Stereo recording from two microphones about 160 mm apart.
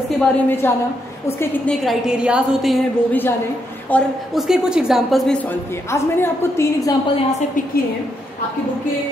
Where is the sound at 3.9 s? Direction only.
10° left (ahead or behind).